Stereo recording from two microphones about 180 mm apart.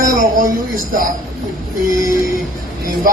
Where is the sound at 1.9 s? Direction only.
50° left (ahead or behind).